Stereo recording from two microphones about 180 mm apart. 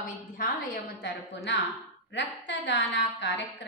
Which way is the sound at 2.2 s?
80° left.